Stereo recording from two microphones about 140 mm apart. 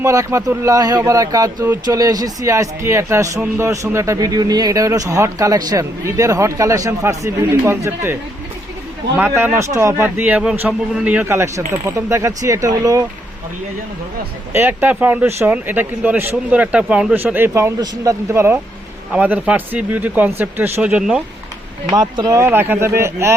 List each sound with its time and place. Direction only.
0.0 s speech: 20° right (ahead or behind)
14.5 s speech: 15° right (ahead or behind)
21.8 s speech: 25° right (ahead or behind)
22.4 s speech: 15° right (ahead or behind)